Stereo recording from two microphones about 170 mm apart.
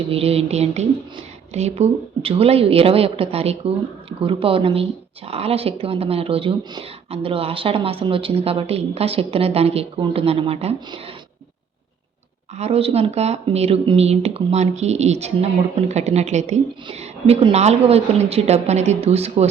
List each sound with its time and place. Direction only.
0.1 s a woman's voice: 35° right (ahead or behind)
12.5 s a woman's voice: 35° right (ahead or behind)